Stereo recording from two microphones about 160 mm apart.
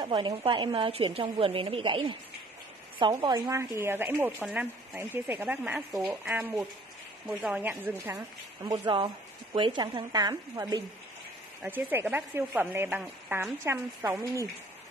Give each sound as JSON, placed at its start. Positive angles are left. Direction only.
{"t": 0.0, "sound": "a woman's voice", "side_deg": -30}
{"t": 8.6, "sound": "speech", "side_deg": -25}
{"t": 11.6, "sound": "a woman's voice", "side_deg": -10}